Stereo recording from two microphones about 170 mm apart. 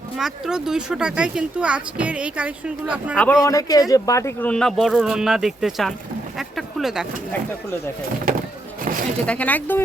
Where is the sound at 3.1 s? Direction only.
10° left (ahead or behind).